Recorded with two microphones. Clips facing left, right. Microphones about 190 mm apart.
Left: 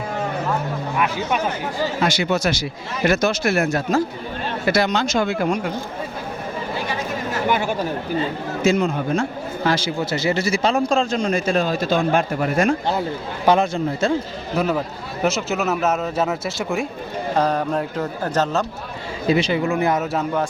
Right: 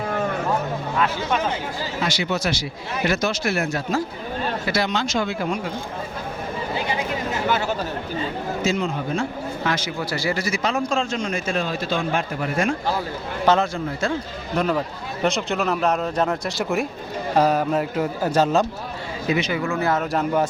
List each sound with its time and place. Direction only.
0.9 s speech: 15° left (ahead or behind)
2.0 s speech: 50° left (ahead or behind)
7.4 s speech: 15° left (ahead or behind)
8.6 s speech: 45° left (ahead or behind)
9.6 s a man's voice: 30° left (ahead or behind)
13.4 s speech: 15° left (ahead or behind); by 18.6 s 10° right (ahead or behind)
19.3 s speech: 30° left (ahead or behind)